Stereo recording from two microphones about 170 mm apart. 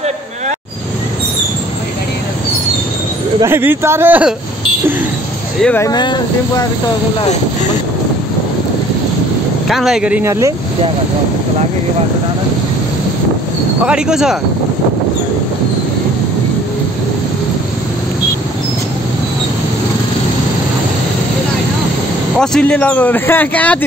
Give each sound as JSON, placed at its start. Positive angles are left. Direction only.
{"t": 3.3, "sound": "a man's voice", "side_deg": -15}
{"t": 5.6, "sound": "speech", "side_deg": 10}
{"t": 5.9, "sound": "speech", "side_deg": 25}
{"t": 9.7, "sound": "a man's voice", "side_deg": 0}
{"t": 13.8, "sound": "speech", "side_deg": -5}
{"t": 22.4, "sound": "speech", "side_deg": 5}